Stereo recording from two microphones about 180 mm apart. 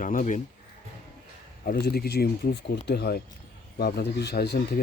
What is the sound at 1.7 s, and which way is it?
Speech, 60° left (ahead or behind).